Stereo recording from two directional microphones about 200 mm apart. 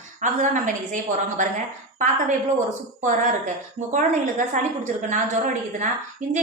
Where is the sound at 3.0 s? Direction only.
40° right (ahead or behind).